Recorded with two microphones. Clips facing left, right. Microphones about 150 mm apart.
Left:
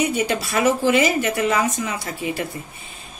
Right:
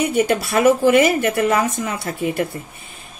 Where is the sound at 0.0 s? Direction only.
50° right (ahead or behind).